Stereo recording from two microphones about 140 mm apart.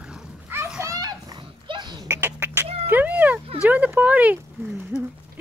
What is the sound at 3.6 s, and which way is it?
Speech, 10° right (ahead or behind).